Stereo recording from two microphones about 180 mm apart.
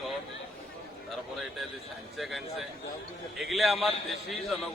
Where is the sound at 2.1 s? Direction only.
Centre (ahead or behind).